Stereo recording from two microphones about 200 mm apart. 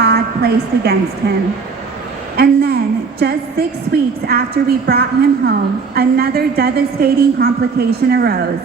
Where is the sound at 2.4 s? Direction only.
50° right (ahead or behind).